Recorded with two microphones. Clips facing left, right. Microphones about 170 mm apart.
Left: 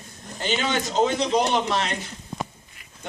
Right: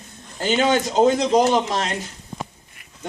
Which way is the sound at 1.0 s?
40° right (ahead or behind).